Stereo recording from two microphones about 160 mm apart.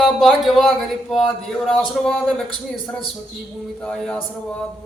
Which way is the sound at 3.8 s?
5° left (ahead or behind).